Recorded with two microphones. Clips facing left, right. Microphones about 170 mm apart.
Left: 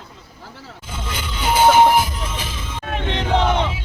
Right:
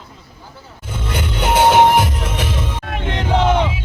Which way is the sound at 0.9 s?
60° right (ahead or behind).